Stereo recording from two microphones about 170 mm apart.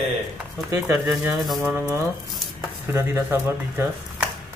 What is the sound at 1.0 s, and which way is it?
Speech, centre (ahead or behind).